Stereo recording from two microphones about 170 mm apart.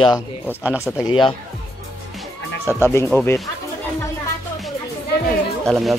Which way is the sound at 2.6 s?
15° left (ahead or behind).